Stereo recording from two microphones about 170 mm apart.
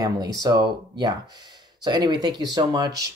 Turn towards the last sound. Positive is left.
turn(degrees=-20)  # may be behind; listen again after turning